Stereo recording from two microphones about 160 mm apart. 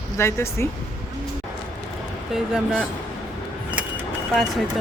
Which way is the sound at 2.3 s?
5° right (ahead or behind).